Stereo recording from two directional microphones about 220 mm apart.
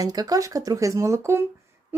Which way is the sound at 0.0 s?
15° right (ahead or behind).